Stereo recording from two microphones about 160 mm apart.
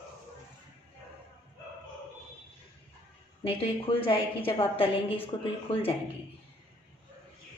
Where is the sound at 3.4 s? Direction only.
35° left (ahead or behind).